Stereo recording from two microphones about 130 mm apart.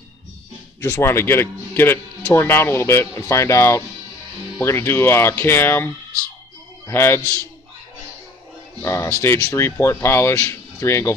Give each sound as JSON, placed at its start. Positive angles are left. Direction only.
{"t": 0.7, "sound": "a man's voice", "side_deg": 20}
{"t": 6.9, "sound": "a man's voice", "side_deg": 20}
{"t": 8.8, "sound": "a man's voice", "side_deg": 20}